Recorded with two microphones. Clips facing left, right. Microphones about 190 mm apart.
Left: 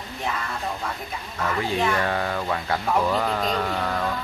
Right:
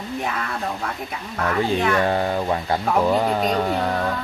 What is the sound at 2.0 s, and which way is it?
Speech, 30° right (ahead or behind).